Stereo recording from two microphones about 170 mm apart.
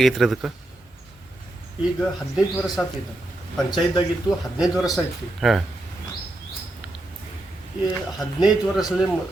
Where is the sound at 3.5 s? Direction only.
25° left (ahead or behind).